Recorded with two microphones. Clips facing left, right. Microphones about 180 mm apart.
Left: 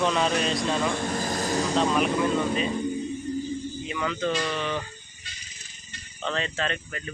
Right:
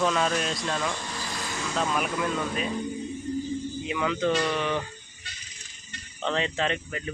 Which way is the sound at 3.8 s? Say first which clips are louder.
Right 3 dB; 15° right (ahead or behind).